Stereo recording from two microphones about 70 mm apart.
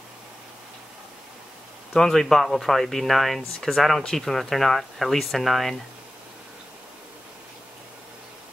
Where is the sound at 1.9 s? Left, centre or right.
Centre.